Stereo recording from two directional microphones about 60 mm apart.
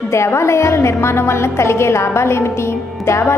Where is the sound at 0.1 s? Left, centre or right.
Left.